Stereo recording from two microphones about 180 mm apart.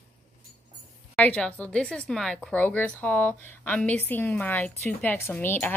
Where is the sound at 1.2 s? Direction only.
5° left (ahead or behind).